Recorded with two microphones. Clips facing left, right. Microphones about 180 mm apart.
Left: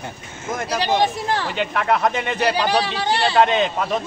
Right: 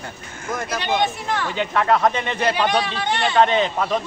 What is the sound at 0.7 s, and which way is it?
Speech, 35° left (ahead or behind).